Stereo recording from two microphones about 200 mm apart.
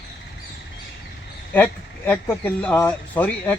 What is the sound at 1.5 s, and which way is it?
Speech, 10° left (ahead or behind).